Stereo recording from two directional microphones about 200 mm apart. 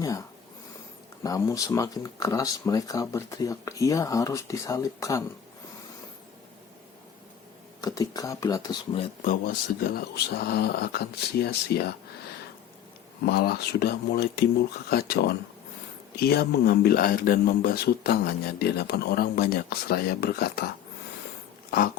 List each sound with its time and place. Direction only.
1.2 s speech: 15° left (ahead or behind)
7.8 s speech: 20° left (ahead or behind)
9.2 s speech: 40° left (ahead or behind)
13.2 s speech: 50° left (ahead or behind)